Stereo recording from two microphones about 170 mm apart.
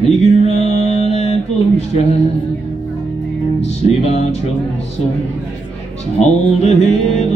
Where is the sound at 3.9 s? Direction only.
40° left (ahead or behind).